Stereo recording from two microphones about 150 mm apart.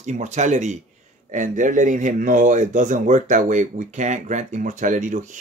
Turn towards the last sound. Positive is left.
turn(degrees=-55)  # may be behind; listen again after turning